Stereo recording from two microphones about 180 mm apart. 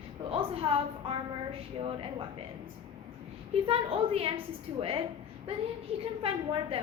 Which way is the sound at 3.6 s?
30° right (ahead or behind).